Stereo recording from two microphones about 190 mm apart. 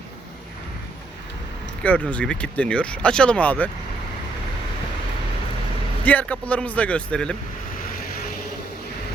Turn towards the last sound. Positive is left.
turn(degrees=5)  # may be behind; listen again after turning